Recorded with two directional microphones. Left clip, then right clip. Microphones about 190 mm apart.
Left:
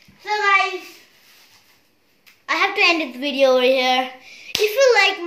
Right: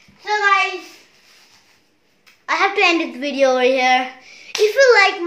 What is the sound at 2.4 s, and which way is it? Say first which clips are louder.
A woman's voice: right 1 dB; 10° right (ahead or behind).